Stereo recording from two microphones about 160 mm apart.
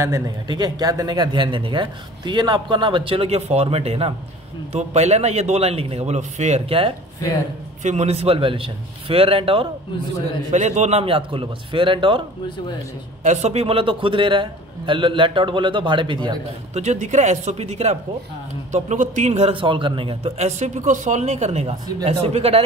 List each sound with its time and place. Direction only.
0.0 s a man's voice: 20° right (ahead or behind)
10.5 s a man's voice: 45° right (ahead or behind); by 12.2 s 30° right (ahead or behind)
13.2 s a man's voice: 45° right (ahead or behind); by 16.3 s 30° right (ahead or behind)
16.7 s a man's voice: 45° right (ahead or behind)